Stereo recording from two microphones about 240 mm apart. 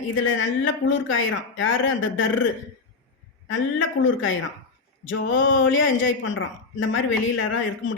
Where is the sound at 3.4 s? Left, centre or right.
Left.